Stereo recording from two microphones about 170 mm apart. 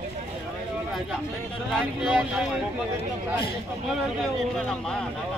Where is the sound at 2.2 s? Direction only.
5° right (ahead or behind).